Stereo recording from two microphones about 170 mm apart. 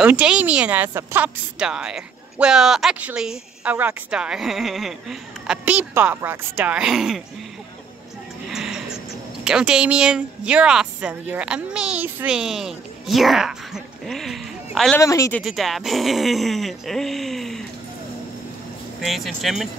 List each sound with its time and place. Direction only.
0.0 s a woman's voice: 5° right (ahead or behind)
8.5 s music: 5° right (ahead or behind)
9.4 s a woman's voice: 5° right (ahead or behind)
15.0 s speech: 20° left (ahead or behind)
15.4 s a woman's voice: centre (ahead or behind)
18.9 s a woman's voice: centre (ahead or behind)